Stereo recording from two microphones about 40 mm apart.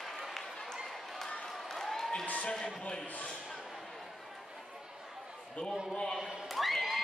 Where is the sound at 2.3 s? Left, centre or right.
Left.